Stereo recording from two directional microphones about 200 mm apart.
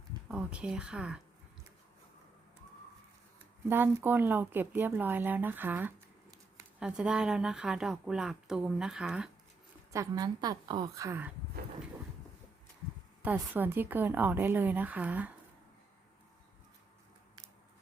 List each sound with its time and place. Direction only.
0.3 s speech: 5° right (ahead or behind)
3.7 s speech: 10° right (ahead or behind)
9.9 s speech: 15° right (ahead or behind)
13.2 s speech: 10° right (ahead or behind)